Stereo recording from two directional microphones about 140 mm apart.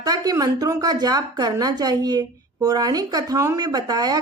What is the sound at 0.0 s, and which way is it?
Speech, 25° right (ahead or behind).